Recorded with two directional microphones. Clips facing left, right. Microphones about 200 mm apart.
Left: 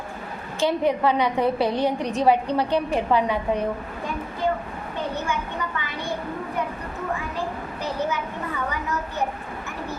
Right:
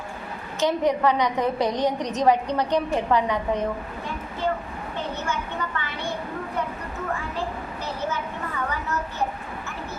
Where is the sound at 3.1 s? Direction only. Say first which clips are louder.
Left 1 dB; 10° left (ahead or behind).